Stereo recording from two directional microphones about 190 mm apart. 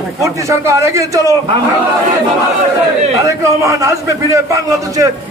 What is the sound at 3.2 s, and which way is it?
A man's voice, 15° right (ahead or behind).